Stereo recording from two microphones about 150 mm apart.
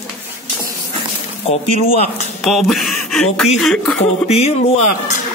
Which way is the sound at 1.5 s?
45° left (ahead or behind).